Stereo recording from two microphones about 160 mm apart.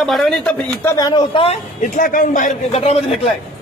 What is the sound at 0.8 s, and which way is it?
Speech, 20° left (ahead or behind).